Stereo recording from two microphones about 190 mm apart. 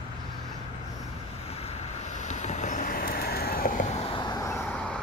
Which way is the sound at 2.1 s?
40° left (ahead or behind).